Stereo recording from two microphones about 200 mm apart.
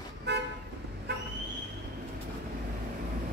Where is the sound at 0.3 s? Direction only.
60° right (ahead or behind).